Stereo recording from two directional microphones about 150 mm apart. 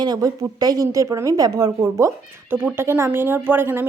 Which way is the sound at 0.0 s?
25° right (ahead or behind).